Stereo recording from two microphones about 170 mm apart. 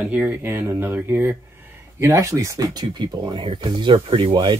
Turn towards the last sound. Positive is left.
turn(degrees=-30)  # may be behind; listen again after turning